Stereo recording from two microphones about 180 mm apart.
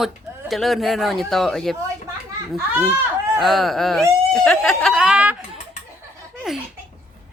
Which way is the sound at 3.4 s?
Centre (ahead or behind).